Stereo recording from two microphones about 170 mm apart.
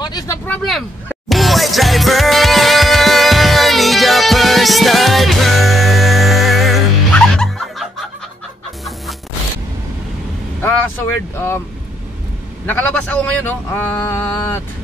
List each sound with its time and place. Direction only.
0.0 s vehicle: 25° left (ahead or behind)
0.5 s speech: centre (ahead or behind)
1.0 s music: centre (ahead or behind)
10.6 s vehicle: 10° left (ahead or behind)
12.6 s a man's voice: 10° left (ahead or behind)